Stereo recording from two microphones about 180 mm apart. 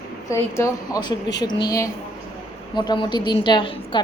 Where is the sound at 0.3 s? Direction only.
15° left (ahead or behind).